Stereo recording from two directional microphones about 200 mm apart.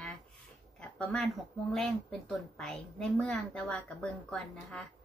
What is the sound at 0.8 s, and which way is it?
Speech, 5° left (ahead or behind).